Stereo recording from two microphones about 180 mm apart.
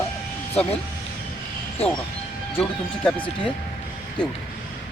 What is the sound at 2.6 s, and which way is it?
Speech, 10° left (ahead or behind).